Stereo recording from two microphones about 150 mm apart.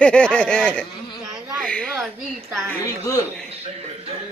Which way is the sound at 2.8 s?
20° left (ahead or behind).